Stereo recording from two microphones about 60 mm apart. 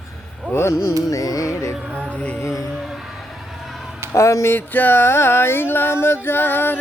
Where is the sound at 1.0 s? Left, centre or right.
Left.